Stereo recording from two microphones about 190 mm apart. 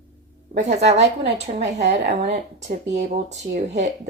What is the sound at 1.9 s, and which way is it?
Speech, 65° right (ahead or behind).